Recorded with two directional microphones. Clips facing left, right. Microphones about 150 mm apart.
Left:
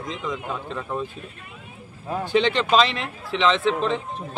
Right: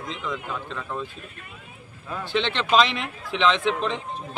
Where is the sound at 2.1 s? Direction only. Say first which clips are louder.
Left 5 dB; 40° left (ahead or behind).